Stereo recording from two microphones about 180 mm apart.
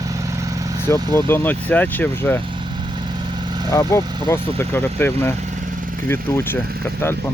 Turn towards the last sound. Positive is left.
turn(degrees=10)  # may be behind; listen again after turning